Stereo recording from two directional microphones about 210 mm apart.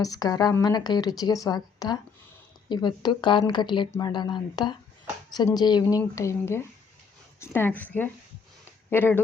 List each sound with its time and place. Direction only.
0.0 s a woman's voice: 15° left (ahead or behind)